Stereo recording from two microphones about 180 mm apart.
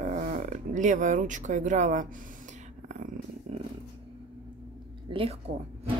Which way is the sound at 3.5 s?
35° right (ahead or behind).